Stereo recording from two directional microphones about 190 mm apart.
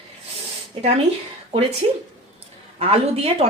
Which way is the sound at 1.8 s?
30° right (ahead or behind).